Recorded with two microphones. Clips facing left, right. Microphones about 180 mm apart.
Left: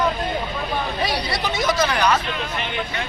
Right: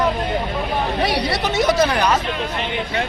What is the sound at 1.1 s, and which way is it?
Speech, 70° right (ahead or behind).